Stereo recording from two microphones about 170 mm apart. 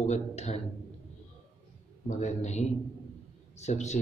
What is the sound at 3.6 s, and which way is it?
Speech, 40° left (ahead or behind).